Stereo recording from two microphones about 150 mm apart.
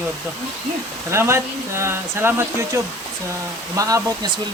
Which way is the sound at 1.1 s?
15° right (ahead or behind).